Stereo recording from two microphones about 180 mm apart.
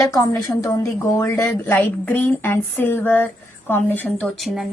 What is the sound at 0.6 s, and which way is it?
Speech, 20° left (ahead or behind).